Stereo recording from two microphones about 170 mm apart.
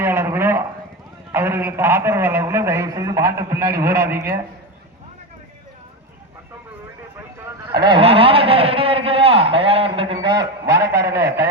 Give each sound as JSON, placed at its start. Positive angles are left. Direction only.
{"t": 0.0, "sound": "a sound", "side_deg": -15}
{"t": 1.3, "sound": "a man's voice", "side_deg": -15}
{"t": 7.8, "sound": "a man's voice", "side_deg": -30}
{"t": 10.7, "sound": "a man's voice", "side_deg": -65}